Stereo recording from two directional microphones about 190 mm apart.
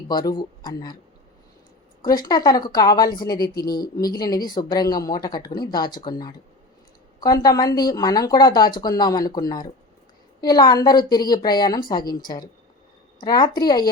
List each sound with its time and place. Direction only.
0.1 s speech: 20° left (ahead or behind)
2.0 s speech: 20° left (ahead or behind)